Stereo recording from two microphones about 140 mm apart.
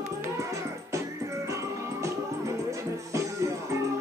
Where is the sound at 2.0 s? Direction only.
20° right (ahead or behind).